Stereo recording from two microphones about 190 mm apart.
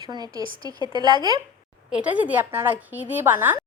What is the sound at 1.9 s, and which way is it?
A woman's voice, 5° right (ahead or behind).